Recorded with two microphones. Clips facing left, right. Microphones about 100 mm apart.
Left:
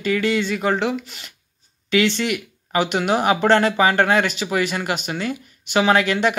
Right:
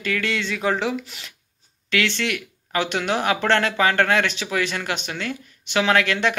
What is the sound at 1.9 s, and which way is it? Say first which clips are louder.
Speech: left 4 dB; 15° left (ahead or behind).